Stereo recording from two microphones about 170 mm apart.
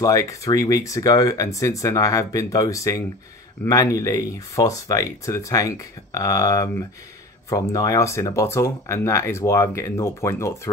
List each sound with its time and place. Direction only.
0.0 s speech: 20° left (ahead or behind)